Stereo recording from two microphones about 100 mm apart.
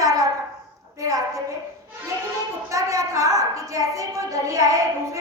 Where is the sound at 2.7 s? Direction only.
35° right (ahead or behind).